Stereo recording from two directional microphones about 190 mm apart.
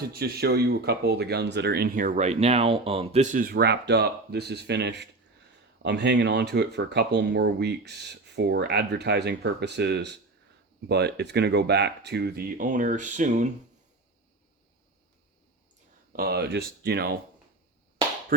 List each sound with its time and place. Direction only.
0.0 s speech: 55° right (ahead or behind)
16.1 s speech: 55° right (ahead or behind)